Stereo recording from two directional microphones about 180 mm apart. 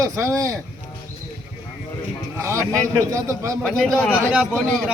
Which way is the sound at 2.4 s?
15° right (ahead or behind).